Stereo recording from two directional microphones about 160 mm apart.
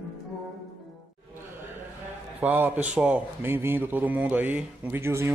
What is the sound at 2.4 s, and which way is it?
Speech, 10° right (ahead or behind).